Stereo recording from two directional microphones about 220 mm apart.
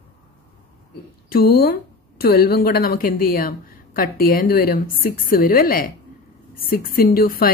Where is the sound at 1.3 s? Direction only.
45° left (ahead or behind).